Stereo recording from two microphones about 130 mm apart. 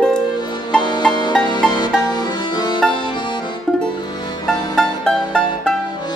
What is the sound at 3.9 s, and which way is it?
Music, 35° left (ahead or behind).